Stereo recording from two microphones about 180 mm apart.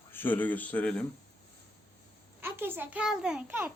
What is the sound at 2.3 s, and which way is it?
A child's voice, 10° right (ahead or behind).